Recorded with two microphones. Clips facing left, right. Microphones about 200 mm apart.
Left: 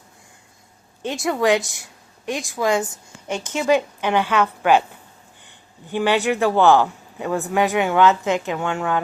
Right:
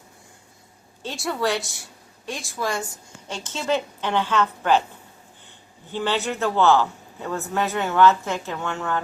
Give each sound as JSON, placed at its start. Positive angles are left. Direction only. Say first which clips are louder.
{"t": 1.0, "sound": "a woman's voice", "louder": "left 6 dB", "side_deg": 15}
{"t": 5.9, "sound": "speech", "louder": "left 6 dB", "side_deg": 15}